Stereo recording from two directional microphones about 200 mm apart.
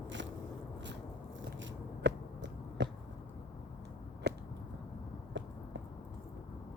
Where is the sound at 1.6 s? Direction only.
60° right (ahead or behind).